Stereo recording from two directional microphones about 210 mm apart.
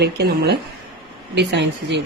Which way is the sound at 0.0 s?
50° right (ahead or behind).